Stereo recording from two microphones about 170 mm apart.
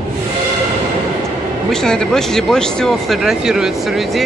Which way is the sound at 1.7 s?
5° left (ahead or behind).